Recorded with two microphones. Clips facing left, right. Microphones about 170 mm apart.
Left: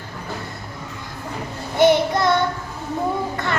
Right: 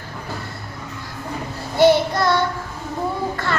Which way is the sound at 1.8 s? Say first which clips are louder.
Right 1 dB; 20° left (ahead or behind).